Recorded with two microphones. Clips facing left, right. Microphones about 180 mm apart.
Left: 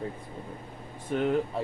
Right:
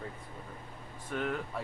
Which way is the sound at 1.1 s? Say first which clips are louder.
Left 8 dB; 25° left (ahead or behind).